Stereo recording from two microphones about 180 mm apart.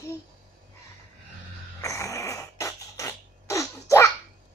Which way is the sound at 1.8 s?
15° left (ahead or behind).